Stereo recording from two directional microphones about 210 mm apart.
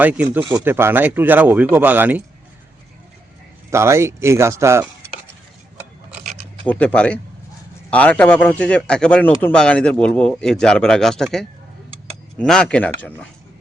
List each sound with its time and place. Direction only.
0.0 s speech: 5° right (ahead or behind)
3.7 s speech: 15° right (ahead or behind)
6.1 s a sound: 25° right (ahead or behind)
6.7 s a man's voice: 5° left (ahead or behind)